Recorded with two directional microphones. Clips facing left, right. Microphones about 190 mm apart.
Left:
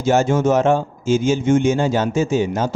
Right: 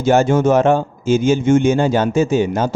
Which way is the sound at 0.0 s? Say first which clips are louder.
Right 3 dB; 55° right (ahead or behind).